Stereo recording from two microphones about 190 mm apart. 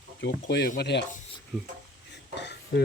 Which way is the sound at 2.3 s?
65° left (ahead or behind).